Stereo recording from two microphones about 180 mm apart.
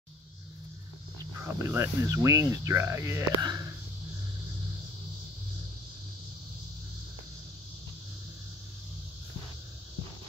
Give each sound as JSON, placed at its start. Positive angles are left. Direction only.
{"t": 1.4, "sound": "speech", "side_deg": -15}